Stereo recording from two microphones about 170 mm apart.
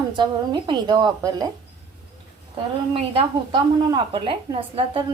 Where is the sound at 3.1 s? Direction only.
30° right (ahead or behind).